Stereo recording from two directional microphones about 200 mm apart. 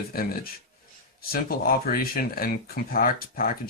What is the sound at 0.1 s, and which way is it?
Speech, 50° left (ahead or behind).